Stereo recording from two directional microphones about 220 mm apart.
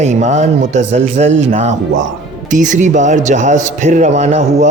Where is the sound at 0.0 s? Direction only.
30° right (ahead or behind).